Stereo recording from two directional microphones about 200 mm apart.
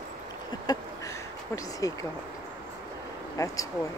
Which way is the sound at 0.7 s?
20° left (ahead or behind).